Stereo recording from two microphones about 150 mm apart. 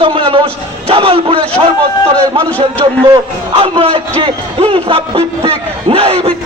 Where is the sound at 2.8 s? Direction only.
30° right (ahead or behind).